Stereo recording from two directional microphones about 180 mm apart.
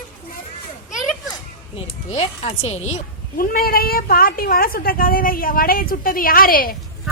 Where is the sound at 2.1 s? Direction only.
35° left (ahead or behind).